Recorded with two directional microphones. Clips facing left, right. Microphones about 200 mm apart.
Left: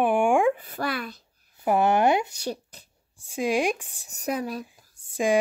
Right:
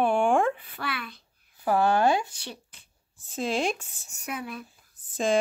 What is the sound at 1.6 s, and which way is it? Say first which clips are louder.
Speech: left 2 dB; 20° left (ahead or behind).